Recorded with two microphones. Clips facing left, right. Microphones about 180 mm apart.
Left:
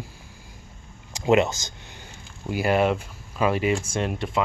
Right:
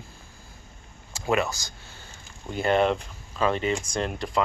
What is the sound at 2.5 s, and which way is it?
Speech, 5° left (ahead or behind).